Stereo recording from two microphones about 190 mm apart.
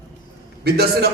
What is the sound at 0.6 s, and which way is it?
Speech, 55° right (ahead or behind).